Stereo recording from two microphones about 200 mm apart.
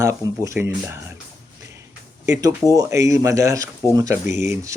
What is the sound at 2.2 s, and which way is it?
Speech, 15° right (ahead or behind).